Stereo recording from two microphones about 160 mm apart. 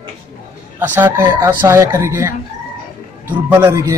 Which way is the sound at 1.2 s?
25° right (ahead or behind).